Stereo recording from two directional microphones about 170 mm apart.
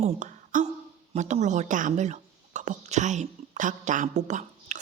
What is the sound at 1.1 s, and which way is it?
A woman's voice, 45° right (ahead or behind).